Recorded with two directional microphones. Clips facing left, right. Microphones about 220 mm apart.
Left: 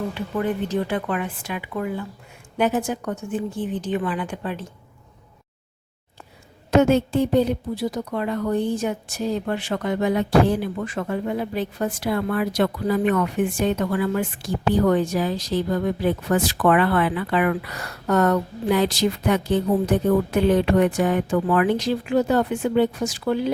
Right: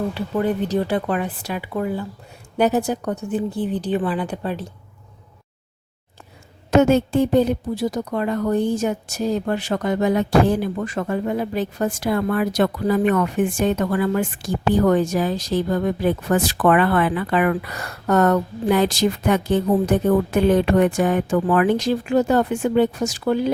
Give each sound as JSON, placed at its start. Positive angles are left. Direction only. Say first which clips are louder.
{"t": 0.1, "sound": "a woman's voice", "louder": "right 3 dB", "side_deg": -35}
{"t": 6.7, "sound": "a woman's voice", "louder": "right 2 dB", "side_deg": -45}